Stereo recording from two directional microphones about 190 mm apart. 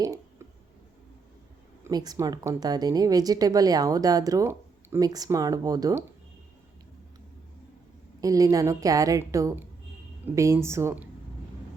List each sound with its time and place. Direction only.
1.8 s speech: 20° right (ahead or behind)
8.2 s a woman's voice: 20° right (ahead or behind)